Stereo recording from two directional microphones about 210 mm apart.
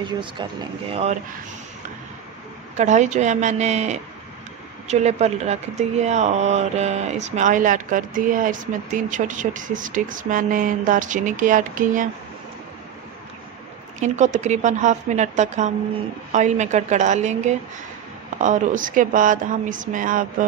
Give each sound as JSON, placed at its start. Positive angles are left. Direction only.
{"t": 0.0, "sound": "speech", "side_deg": -20}
{"t": 2.8, "sound": "speech", "side_deg": -35}
{"t": 13.9, "sound": "speech", "side_deg": -35}